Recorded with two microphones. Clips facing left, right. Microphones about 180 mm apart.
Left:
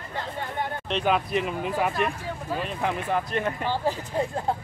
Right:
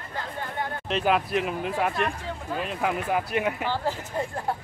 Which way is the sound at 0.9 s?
Centre (ahead or behind).